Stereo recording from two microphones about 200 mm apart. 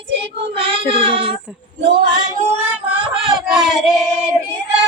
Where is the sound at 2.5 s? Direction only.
10° right (ahead or behind).